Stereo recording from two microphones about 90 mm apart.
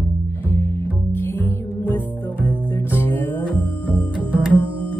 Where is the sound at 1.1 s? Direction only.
20° left (ahead or behind).